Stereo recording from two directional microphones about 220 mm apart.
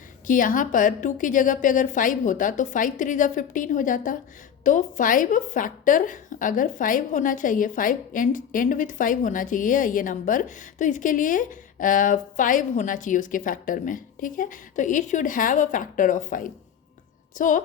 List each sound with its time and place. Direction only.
0.3 s a woman's voice: 35° left (ahead or behind)